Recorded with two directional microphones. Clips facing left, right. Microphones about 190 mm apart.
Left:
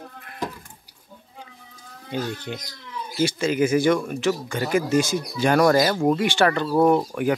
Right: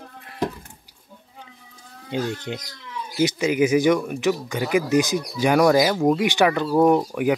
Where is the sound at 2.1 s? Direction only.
20° right (ahead or behind).